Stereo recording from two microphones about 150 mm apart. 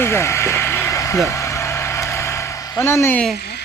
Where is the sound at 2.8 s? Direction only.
15° left (ahead or behind).